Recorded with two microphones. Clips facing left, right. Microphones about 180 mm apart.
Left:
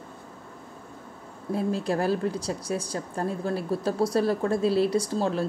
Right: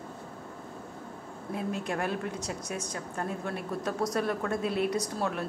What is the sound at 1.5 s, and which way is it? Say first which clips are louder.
Speech: left 6 dB; 35° left (ahead or behind).